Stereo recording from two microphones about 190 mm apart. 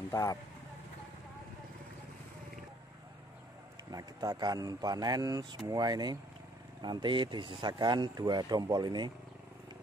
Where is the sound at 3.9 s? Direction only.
20° right (ahead or behind).